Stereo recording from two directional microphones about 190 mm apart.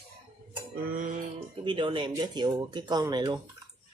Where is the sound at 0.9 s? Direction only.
45° right (ahead or behind).